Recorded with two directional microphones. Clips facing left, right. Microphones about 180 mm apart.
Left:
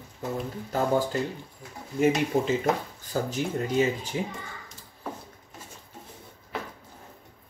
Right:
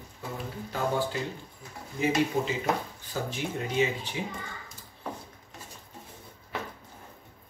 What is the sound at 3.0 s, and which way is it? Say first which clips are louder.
Speech: left 8 dB; 40° left (ahead or behind).